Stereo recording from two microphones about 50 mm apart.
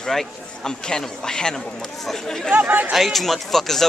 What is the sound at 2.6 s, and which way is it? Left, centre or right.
Speech, right.